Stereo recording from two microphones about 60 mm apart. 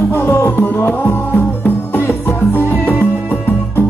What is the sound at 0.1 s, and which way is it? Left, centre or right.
Music, left.